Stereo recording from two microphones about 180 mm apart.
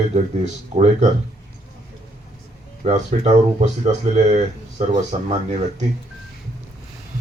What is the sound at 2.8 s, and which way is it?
Speech, 40° right (ahead or behind).